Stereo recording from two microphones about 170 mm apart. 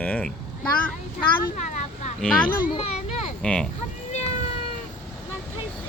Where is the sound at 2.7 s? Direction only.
40° left (ahead or behind).